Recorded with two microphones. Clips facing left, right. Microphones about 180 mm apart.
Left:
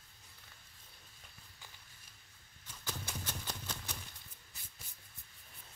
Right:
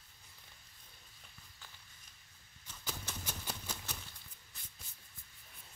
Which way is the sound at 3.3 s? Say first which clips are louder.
Even; 10° right (ahead or behind).